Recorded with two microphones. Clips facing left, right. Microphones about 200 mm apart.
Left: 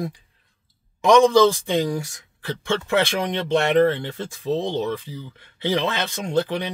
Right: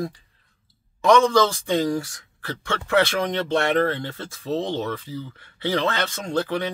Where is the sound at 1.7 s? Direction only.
15° left (ahead or behind).